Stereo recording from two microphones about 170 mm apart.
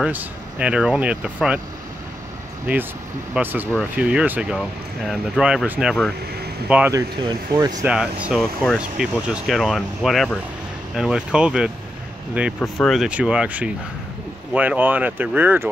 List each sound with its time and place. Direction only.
0.0 s speech: 10° right (ahead or behind)
2.7 s speech: 10° right (ahead or behind)
6.9 s speech: 20° right (ahead or behind)
7.8 s speech: 5° right (ahead or behind)